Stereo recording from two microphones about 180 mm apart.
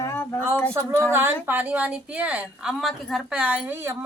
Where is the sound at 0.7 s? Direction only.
15° right (ahead or behind).